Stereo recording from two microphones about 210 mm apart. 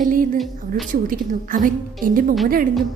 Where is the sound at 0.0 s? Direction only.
40° right (ahead or behind).